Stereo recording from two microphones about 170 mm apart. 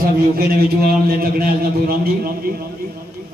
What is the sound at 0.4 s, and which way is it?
A man's voice, 60° right (ahead or behind).